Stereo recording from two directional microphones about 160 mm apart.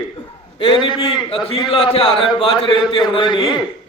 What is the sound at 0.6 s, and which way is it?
A man's voice, 30° left (ahead or behind).